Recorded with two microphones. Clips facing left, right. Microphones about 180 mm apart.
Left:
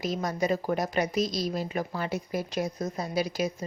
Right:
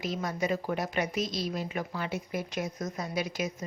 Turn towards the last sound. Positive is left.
turn(degrees=35)  # may be behind; listen again after turning